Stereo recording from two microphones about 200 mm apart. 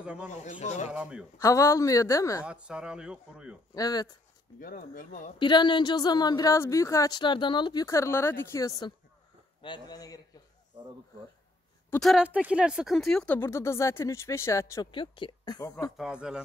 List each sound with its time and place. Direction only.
0.0 s speech: 5° right (ahead or behind)
0.3 s speech: 35° left (ahead or behind)
0.9 s speech: 5° right (ahead or behind)
1.4 s speech: 15° left (ahead or behind)
2.4 s speech: 5° right (ahead or behind)
3.7 s speech: 20° left (ahead or behind)
4.6 s speech: 45° left (ahead or behind)
5.4 s speech: 25° left (ahead or behind)
11.9 s speech: centre (ahead or behind); by 15.7 s 20° left (ahead or behind)
16.0 s speech: 5° right (ahead or behind)